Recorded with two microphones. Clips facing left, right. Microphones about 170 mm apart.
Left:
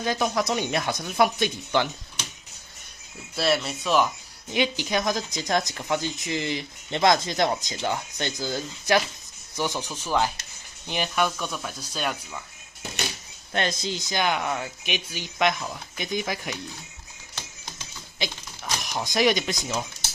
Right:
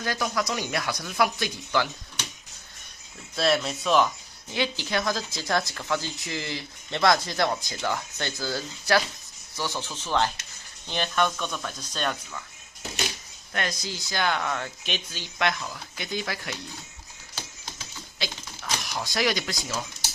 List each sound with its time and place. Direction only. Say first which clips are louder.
0.0 s speech: left 3 dB; 20° left (ahead or behind)
3.3 s speech: even; centre (ahead or behind)
4.5 s speech: left 3 dB; 15° left (ahead or behind)
13.5 s speech: left 4 dB; 25° left (ahead or behind)
18.2 s speech: left 3 dB; 20° left (ahead or behind)